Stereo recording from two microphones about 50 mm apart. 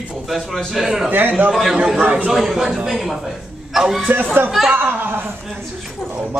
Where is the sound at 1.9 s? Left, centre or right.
Right.